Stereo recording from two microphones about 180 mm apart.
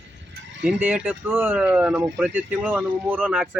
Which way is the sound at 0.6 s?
5° right (ahead or behind).